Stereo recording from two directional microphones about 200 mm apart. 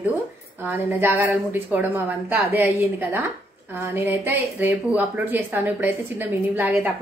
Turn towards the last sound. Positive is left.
turn(degrees=-10)  # may be behind; listen again after turning